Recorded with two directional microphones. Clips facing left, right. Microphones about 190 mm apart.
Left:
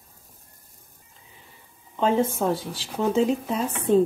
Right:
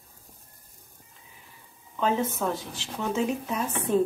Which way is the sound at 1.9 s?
30° left (ahead or behind).